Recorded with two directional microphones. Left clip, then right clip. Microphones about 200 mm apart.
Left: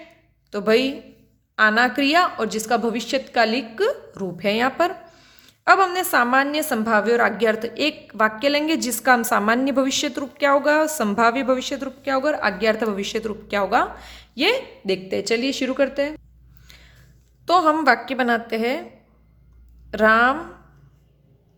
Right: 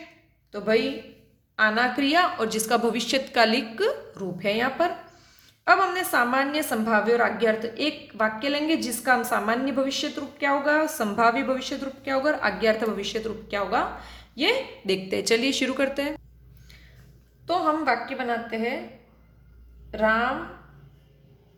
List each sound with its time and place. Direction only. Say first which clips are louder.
0.5 s a woman's voice: left 5 dB; 40° left (ahead or behind); by 16.1 s 20° left (ahead or behind)
16.6 s a sound: left 5 dB; 40° left (ahead or behind)
17.4 s a woman's voice: left 7 dB; 50° left (ahead or behind)
19.9 s speech: left 7 dB; 55° left (ahead or behind)